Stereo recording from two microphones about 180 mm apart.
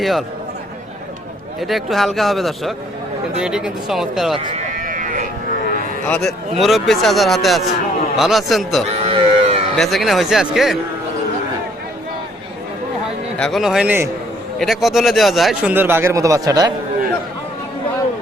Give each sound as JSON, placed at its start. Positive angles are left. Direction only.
{"t": 0.0, "sound": "a man's voice", "side_deg": 0}
{"t": 1.6, "sound": "a man's voice", "side_deg": 0}
{"t": 4.5, "sound": "sheep", "side_deg": -45}
{"t": 6.1, "sound": "a man's voice", "side_deg": 5}
{"t": 9.0, "sound": "sheep", "side_deg": -30}
{"t": 9.7, "sound": "a man's voice", "side_deg": 0}
{"t": 13.4, "sound": "a man's voice", "side_deg": 0}
{"t": 15.7, "sound": "speech", "side_deg": -10}